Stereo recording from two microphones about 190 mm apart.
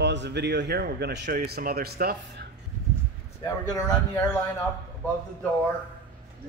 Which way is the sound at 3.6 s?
20° left (ahead or behind).